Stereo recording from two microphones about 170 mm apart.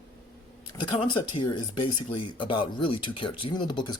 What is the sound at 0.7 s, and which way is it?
Speech, 30° left (ahead or behind).